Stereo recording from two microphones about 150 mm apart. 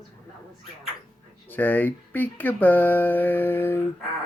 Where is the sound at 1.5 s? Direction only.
10° left (ahead or behind).